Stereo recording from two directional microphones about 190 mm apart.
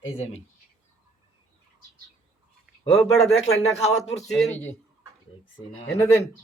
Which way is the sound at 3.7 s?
35° left (ahead or behind).